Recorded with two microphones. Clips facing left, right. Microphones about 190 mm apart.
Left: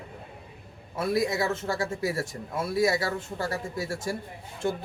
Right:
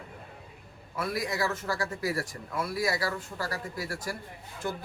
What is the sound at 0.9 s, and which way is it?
A man's voice, 25° left (ahead or behind).